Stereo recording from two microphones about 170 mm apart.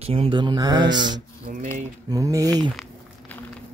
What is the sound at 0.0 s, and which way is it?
Mantra, 35° right (ahead or behind).